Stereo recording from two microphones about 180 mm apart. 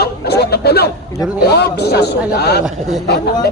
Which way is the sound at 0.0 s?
65° left (ahead or behind).